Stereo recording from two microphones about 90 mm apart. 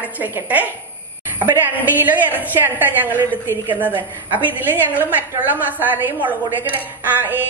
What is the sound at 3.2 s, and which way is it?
Speech, 25° left (ahead or behind).